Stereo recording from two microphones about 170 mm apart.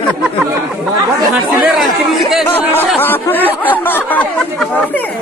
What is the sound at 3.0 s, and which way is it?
Chatter, 10° left (ahead or behind).